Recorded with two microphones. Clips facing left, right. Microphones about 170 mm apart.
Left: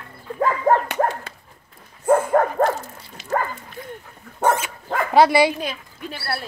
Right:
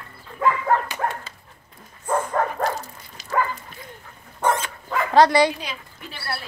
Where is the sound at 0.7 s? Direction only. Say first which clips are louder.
Left 6 dB; 40° left (ahead or behind).